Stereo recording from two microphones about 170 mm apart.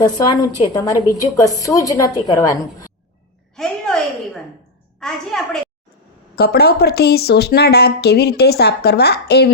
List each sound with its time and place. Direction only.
0.0 s a woman's voice: 25° left (ahead or behind)
3.5 s a sound: 5° left (ahead or behind)
4.9 s a woman's voice: 5° left (ahead or behind)
6.3 s speech: 70° left (ahead or behind)